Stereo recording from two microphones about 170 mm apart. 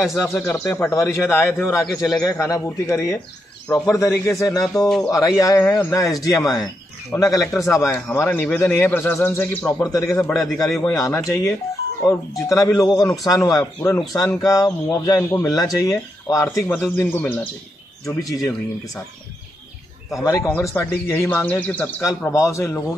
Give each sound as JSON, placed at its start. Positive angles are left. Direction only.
{"t": 0.2, "sound": "a man's voice", "side_deg": 15}
{"t": 10.3, "sound": "a man's voice", "side_deg": 0}
{"t": 11.0, "sound": "a man's voice", "side_deg": 20}
{"t": 16.6, "sound": "a man's voice", "side_deg": 10}
{"t": 20.2, "sound": "a man's voice", "side_deg": 15}